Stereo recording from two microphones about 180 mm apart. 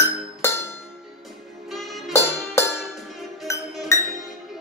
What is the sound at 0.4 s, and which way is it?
Music, 15° left (ahead or behind).